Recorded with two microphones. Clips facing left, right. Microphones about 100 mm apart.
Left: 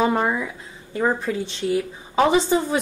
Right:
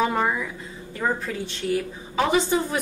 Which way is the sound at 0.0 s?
20° left (ahead or behind).